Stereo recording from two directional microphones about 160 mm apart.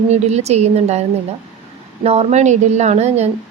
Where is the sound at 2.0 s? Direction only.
45° right (ahead or behind).